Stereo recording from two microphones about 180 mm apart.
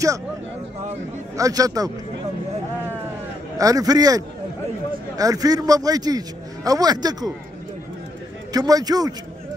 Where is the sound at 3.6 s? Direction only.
20° right (ahead or behind).